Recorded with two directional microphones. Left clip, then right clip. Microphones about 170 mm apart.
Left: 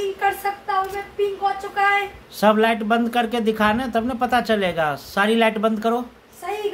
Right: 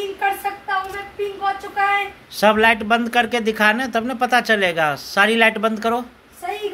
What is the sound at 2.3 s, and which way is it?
Speech, 5° left (ahead or behind).